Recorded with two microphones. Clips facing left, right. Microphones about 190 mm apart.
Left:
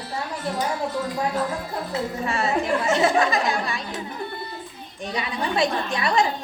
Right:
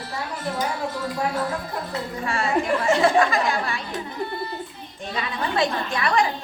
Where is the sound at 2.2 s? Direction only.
20° left (ahead or behind).